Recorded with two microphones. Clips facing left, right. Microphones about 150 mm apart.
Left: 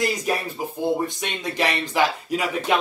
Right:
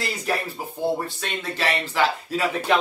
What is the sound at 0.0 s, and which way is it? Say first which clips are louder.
Speech: left 3 dB; 15° left (ahead or behind).